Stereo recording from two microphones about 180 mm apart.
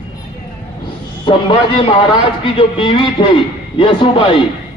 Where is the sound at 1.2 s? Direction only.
25° left (ahead or behind).